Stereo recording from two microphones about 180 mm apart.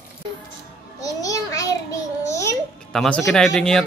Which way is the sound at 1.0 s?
20° left (ahead or behind).